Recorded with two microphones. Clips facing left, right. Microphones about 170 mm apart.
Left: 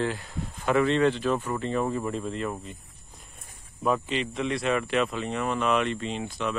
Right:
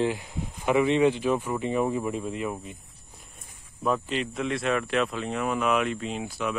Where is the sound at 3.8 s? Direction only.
Centre (ahead or behind).